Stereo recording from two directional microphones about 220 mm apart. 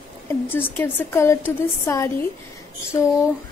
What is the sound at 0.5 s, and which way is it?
Speech, 10° left (ahead or behind).